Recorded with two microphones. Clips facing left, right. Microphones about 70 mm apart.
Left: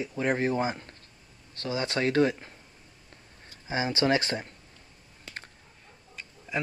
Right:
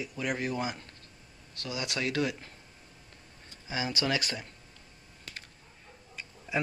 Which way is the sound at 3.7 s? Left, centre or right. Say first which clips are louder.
Left 5 dB; left.